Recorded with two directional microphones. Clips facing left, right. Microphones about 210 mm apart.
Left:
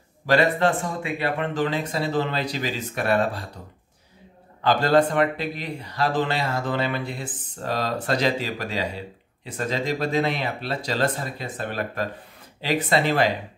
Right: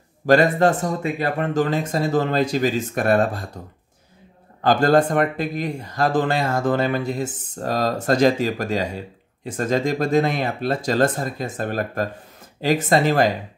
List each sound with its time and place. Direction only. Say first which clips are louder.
0.3 s speech: right 4 dB; 45° right (ahead or behind)
4.6 s speech: right 3 dB; 45° right (ahead or behind)